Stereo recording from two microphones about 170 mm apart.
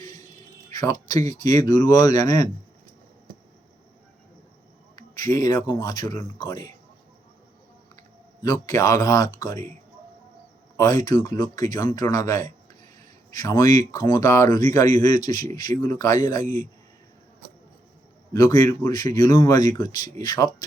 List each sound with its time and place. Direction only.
0.0 s a sound: 25° left (ahead or behind)
0.7 s speech: 20° left (ahead or behind)
4.9 s a sound: 20° left (ahead or behind)
5.8 s speech: 25° left (ahead or behind)
8.4 s speech: 20° left (ahead or behind)
10.8 s speech: 20° left (ahead or behind)
18.3 s speech: 20° left (ahead or behind)